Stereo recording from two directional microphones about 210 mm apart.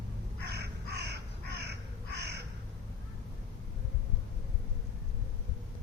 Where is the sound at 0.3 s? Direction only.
55° right (ahead or behind).